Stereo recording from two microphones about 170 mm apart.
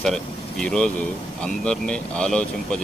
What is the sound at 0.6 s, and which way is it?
Speech, 5° left (ahead or behind).